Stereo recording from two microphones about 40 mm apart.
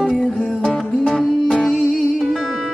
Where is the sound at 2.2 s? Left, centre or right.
Centre.